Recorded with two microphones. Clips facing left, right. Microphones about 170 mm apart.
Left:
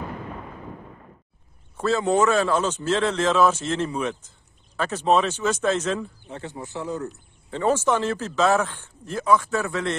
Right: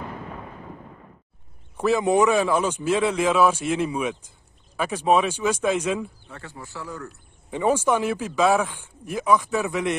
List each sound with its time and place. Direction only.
1.8 s a man's voice: 15° right (ahead or behind)
6.2 s speech: 20° left (ahead or behind)
7.5 s a man's voice: 10° right (ahead or behind)